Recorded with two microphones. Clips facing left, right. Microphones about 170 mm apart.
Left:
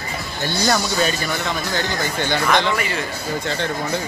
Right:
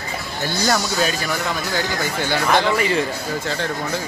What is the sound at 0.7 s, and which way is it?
Speech, 5° right (ahead or behind).